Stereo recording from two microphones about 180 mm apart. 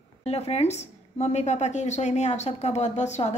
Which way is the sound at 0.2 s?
35° left (ahead or behind).